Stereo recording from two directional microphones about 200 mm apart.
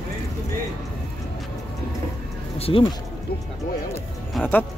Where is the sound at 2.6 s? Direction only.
25° left (ahead or behind).